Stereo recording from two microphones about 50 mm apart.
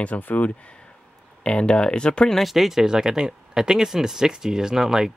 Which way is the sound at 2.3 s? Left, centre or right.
Centre.